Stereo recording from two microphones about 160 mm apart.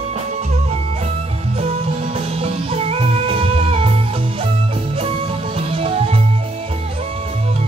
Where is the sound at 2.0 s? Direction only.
40° right (ahead or behind).